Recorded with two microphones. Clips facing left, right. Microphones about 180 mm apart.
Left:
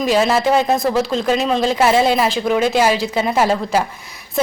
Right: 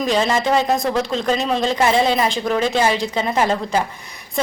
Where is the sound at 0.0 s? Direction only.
5° left (ahead or behind).